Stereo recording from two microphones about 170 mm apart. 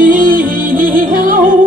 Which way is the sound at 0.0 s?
55° right (ahead or behind).